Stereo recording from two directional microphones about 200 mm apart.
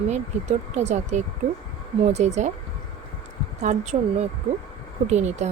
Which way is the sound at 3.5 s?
35° right (ahead or behind).